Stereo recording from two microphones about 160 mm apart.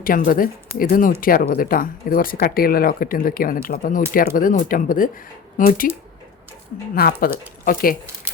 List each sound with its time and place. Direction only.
0.0 s speech: 60° left (ahead or behind)
6.9 s speech: 65° left (ahead or behind)